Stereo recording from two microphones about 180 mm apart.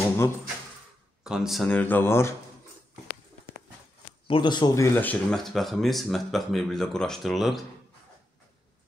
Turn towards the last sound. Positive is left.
turn(degrees=0)  # may be behind; listen again after turning